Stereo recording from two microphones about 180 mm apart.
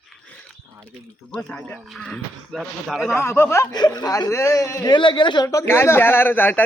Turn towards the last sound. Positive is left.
turn(degrees=10)  # may be behind; listen again after turning